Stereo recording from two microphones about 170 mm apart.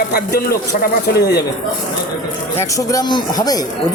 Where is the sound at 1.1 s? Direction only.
65° left (ahead or behind).